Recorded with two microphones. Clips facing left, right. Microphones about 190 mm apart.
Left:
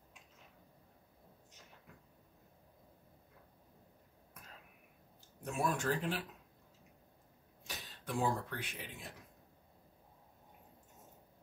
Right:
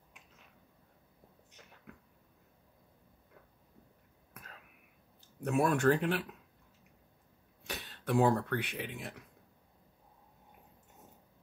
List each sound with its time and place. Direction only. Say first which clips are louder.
1.9 s a sound: right 9 dB; 70° right (ahead or behind)
5.4 s speech: right 8 dB; 65° right (ahead or behind)
7.6 s speech: right 8 dB; 65° right (ahead or behind)